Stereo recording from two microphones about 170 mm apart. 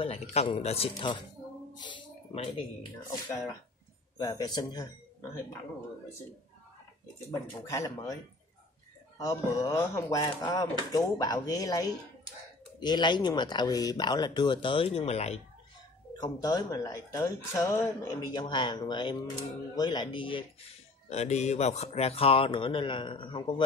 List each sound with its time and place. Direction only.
0.0 s speech: 35° left (ahead or behind)
1.8 s a sound: 30° left (ahead or behind)
4.2 s speech: 20° left (ahead or behind)
7.6 s speech: 15° left (ahead or behind)
9.2 s speech: 15° left (ahead or behind); by 15.4 s 40° left (ahead or behind)
16.1 s speech: 20° left (ahead or behind)
21.1 s speech: 40° left (ahead or behind)